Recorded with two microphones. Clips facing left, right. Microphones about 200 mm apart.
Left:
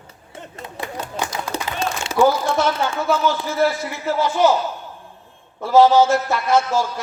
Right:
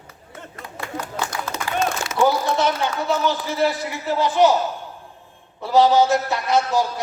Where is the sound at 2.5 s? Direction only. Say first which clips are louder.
Left 1 dB; 20° right (ahead or behind).